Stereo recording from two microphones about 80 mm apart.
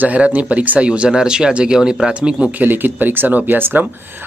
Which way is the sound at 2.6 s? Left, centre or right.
Right.